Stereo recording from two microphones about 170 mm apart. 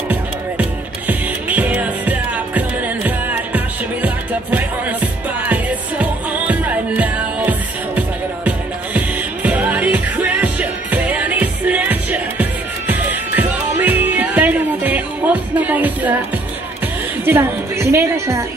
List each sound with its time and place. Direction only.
1.0 s music: 10° right (ahead or behind)
17.2 s a woman's voice: 15° right (ahead or behind)